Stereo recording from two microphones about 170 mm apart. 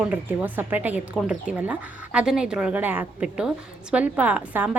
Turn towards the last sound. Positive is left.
turn(degrees=-10)  # may be behind; listen again after turning